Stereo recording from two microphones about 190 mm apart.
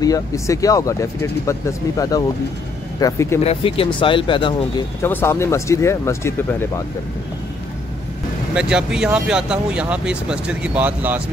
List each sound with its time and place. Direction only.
0.0 s speech: 20° left (ahead or behind)
3.4 s speech: 30° left (ahead or behind)
5.0 s speech: 10° left (ahead or behind)
8.5 s speech: 5° right (ahead or behind)